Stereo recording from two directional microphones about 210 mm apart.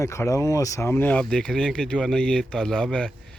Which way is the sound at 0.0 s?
15° left (ahead or behind).